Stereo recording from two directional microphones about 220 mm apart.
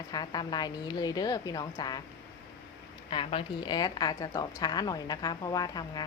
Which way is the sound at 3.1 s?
25° left (ahead or behind).